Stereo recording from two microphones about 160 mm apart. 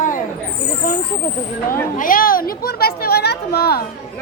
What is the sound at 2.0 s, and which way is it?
A woman's voice, 60° left (ahead or behind).